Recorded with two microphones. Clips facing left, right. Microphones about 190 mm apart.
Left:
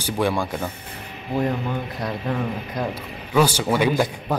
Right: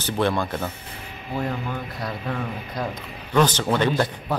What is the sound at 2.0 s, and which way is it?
A man's voice, 10° left (ahead or behind).